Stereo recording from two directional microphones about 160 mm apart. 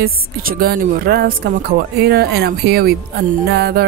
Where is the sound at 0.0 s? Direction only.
65° right (ahead or behind).